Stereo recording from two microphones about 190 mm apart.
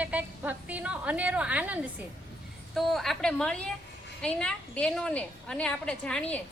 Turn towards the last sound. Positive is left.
turn(degrees=5)  # may be behind; listen again after turning